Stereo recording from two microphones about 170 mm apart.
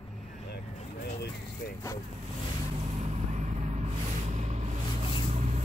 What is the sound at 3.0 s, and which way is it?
Vehicle, 40° right (ahead or behind).